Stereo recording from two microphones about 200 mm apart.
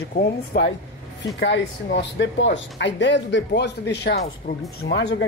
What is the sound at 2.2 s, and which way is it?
Speech, 65° left (ahead or behind).